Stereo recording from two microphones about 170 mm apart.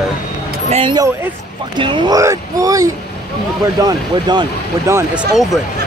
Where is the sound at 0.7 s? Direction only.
30° right (ahead or behind).